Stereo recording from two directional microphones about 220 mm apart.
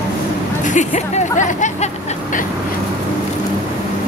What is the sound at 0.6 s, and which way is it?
Speech, 35° left (ahead or behind).